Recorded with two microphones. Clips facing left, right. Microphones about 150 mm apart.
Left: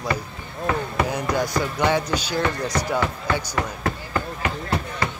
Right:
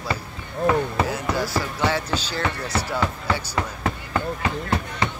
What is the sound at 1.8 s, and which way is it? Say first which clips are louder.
Speech: left 3 dB; 15° left (ahead or behind).